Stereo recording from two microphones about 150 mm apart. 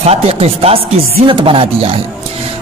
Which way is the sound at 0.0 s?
45° right (ahead or behind).